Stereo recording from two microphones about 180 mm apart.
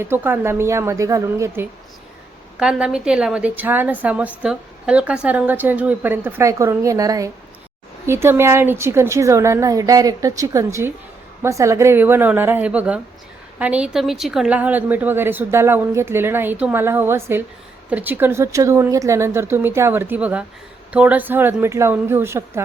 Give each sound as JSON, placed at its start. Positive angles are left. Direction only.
{"t": 0.0, "sound": "a woman's voice", "side_deg": -15}
{"t": 2.6, "sound": "a woman's voice", "side_deg": -5}